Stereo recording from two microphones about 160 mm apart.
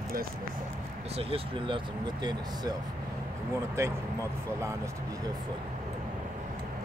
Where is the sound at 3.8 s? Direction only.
15° right (ahead or behind).